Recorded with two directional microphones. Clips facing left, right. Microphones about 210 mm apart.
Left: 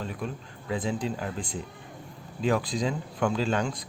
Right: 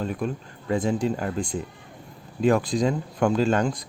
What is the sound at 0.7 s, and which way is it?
Speech, 45° right (ahead or behind).